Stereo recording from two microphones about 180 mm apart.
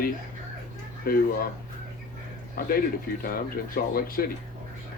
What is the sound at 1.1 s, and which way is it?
Speech, 55° left (ahead or behind).